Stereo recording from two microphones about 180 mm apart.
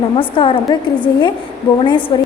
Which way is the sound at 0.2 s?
30° left (ahead or behind).